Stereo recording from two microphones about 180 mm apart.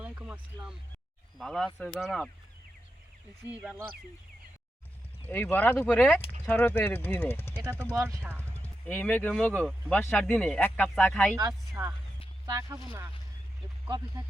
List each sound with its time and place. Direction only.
0.0 s a sound: 5° right (ahead or behind)
1.4 s speech: centre (ahead or behind)
3.5 s speech: 5° right (ahead or behind)
5.3 s speech: 10° left (ahead or behind)
7.5 s speech: 15° right (ahead or behind)
8.4 s speech: 10° left (ahead or behind)
11.3 s speech: 20° right (ahead or behind)